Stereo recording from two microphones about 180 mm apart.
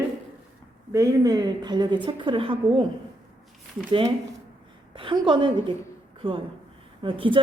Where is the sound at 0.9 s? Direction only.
20° right (ahead or behind).